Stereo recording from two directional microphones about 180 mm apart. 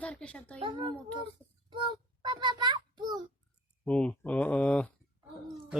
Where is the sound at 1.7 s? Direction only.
25° right (ahead or behind).